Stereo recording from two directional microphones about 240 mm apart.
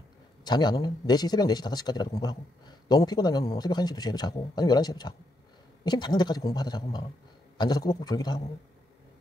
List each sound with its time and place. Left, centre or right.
0.4 s speech: centre